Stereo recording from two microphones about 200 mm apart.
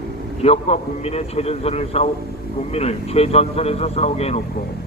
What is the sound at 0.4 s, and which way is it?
A man's voice, 30° left (ahead or behind).